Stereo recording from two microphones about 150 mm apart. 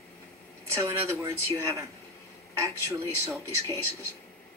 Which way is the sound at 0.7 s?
20° right (ahead or behind).